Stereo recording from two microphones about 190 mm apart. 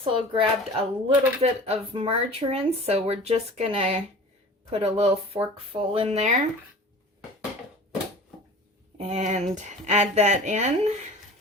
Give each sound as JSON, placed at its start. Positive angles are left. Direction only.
{"t": 0.0, "sound": "speech", "side_deg": -30}
{"t": 9.0, "sound": "speech", "side_deg": -35}